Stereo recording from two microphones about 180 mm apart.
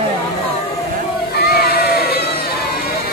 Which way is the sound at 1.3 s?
60° left (ahead or behind).